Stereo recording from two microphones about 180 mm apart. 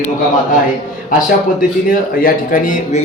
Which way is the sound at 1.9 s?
50° left (ahead or behind).